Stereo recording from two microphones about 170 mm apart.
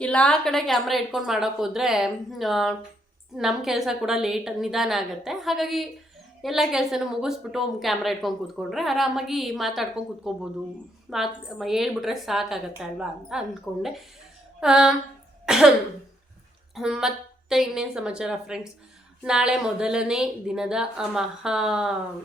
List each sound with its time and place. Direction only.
0.0 s a woman's voice: 5° left (ahead or behind)
15.4 s cough: 5° right (ahead or behind)
16.7 s a woman's voice: 5° right (ahead or behind)